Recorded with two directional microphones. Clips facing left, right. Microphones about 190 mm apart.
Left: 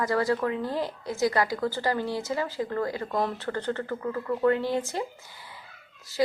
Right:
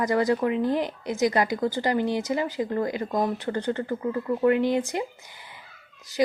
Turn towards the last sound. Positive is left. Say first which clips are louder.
# right 2 dB
turn(degrees=-15)  # may be behind; listen again after turning